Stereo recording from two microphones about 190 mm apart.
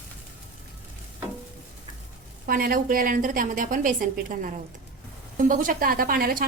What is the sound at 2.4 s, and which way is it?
A woman's voice, 50° right (ahead or behind).